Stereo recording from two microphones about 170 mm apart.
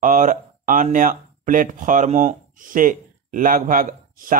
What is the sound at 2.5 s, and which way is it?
Speech, 55° right (ahead or behind).